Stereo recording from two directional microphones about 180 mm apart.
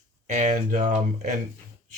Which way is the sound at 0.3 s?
45° right (ahead or behind).